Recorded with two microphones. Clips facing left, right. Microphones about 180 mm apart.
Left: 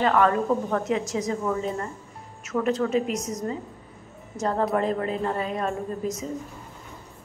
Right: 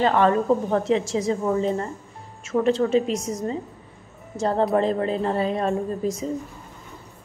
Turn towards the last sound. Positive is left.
turn(degrees=-30)  # may be behind; listen again after turning